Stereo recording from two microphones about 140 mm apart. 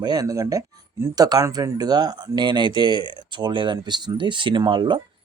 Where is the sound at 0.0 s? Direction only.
25° right (ahead or behind).